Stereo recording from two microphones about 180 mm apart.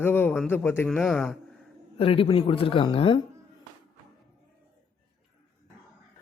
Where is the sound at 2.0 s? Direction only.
30° left (ahead or behind).